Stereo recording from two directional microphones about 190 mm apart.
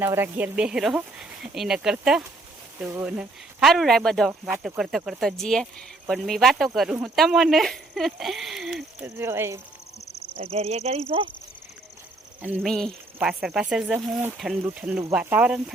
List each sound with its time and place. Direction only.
0.0 s speech: 10° right (ahead or behind)
9.0 s speech: 15° right (ahead or behind)
10.4 s speech: 35° right (ahead or behind)
12.6 s speech: centre (ahead or behind)